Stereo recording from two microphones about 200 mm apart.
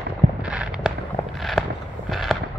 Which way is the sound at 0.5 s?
5° right (ahead or behind).